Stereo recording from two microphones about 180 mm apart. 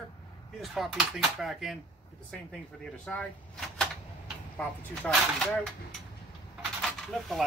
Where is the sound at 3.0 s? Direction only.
5° left (ahead or behind).